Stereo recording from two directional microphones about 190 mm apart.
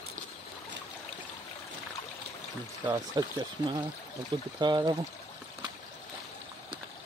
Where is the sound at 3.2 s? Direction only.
25° right (ahead or behind).